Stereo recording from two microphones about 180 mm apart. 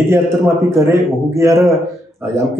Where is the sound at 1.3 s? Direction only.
15° right (ahead or behind).